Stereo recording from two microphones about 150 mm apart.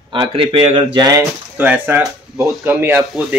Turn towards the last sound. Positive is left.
turn(degrees=-15)  # may be behind; listen again after turning